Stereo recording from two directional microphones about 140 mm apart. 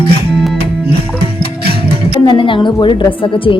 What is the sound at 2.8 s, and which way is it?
Speech, 35° left (ahead or behind).